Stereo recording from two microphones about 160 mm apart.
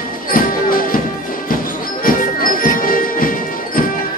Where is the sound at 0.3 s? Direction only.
60° left (ahead or behind).